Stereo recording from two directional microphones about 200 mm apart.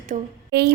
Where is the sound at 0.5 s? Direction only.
55° right (ahead or behind).